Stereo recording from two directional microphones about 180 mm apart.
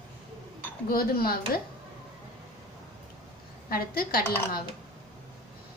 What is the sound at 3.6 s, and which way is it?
A woman's voice, 55° left (ahead or behind).